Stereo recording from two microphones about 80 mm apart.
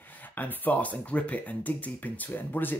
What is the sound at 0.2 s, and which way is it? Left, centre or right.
Speech, left.